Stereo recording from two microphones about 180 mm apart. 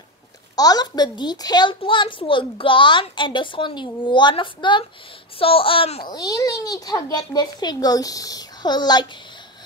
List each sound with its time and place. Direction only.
0.6 s a child's voice: 20° left (ahead or behind)
6.0 s a child's voice: 20° left (ahead or behind)